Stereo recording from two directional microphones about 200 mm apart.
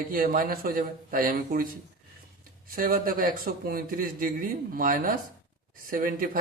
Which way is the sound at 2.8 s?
45° right (ahead or behind).